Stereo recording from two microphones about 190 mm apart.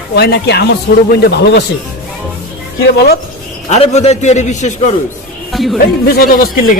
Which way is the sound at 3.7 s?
35° left (ahead or behind).